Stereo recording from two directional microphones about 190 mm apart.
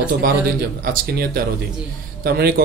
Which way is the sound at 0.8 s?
50° right (ahead or behind).